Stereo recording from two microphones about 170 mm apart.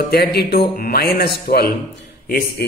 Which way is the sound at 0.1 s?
70° left (ahead or behind).